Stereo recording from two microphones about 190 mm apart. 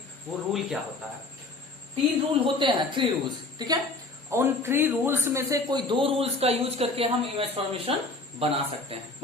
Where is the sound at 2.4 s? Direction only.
25° right (ahead or behind).